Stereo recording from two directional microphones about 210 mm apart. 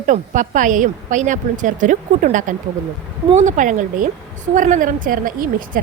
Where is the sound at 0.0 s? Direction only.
40° right (ahead or behind).